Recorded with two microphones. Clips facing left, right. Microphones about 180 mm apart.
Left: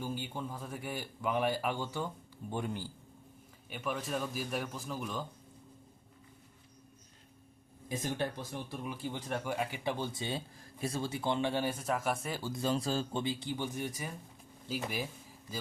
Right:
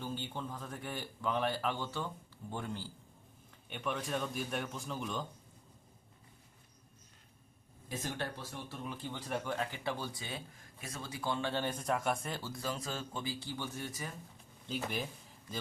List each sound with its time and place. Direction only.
0.0 s speech: 10° left (ahead or behind)
3.7 s a man's voice: 5° left (ahead or behind)
7.9 s speech: 15° left (ahead or behind)
12.4 s a man's voice: 20° left (ahead or behind); by 15.0 s 5° left (ahead or behind)